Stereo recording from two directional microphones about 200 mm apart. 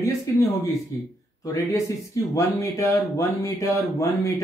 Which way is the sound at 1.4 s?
15° left (ahead or behind).